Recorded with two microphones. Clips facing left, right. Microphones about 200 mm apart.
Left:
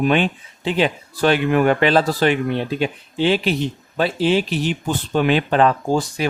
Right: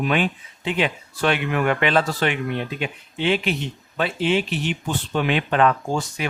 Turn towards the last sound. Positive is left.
turn(degrees=35)  # may be behind; listen again after turning